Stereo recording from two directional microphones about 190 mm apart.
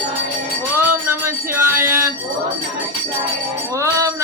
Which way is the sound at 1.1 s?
15° right (ahead or behind).